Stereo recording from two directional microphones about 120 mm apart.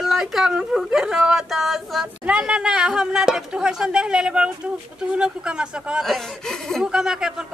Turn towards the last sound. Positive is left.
turn(degrees=-5)  # may be behind; listen again after turning